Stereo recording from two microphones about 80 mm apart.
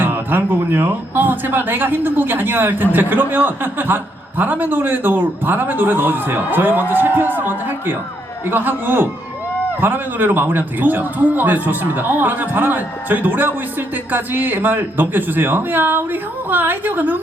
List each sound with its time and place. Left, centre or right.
0.0 s speech: right